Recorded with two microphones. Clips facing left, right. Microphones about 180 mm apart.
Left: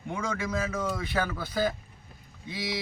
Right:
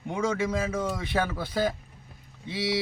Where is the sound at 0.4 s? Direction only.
30° right (ahead or behind).